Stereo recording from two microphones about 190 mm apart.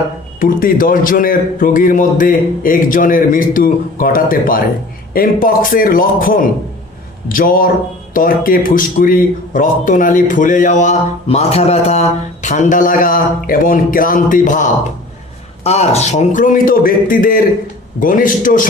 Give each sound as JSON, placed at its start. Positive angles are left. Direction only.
{"t": 0.3, "sound": "speech", "side_deg": 45}